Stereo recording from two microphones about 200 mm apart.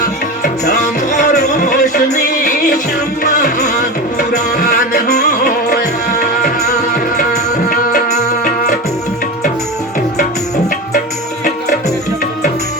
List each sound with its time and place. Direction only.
0.4 s music: 35° left (ahead or behind)
1.3 s music: 50° left (ahead or behind)
3.3 s music: 35° left (ahead or behind)
4.5 s music: 50° left (ahead or behind)